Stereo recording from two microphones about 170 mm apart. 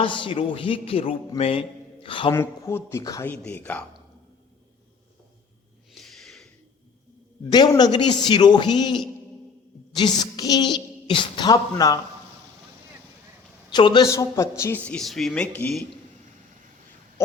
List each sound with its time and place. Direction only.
0.0 s a man's voice: 30° left (ahead or behind)
2.3 s speech: 15° left (ahead or behind)
3.3 s speech: 10° left (ahead or behind)
5.9 s a sound: centre (ahead or behind)
7.5 s speech: 25° left (ahead or behind)
13.7 s speech: 25° left (ahead or behind); by 15.8 s 5° left (ahead or behind)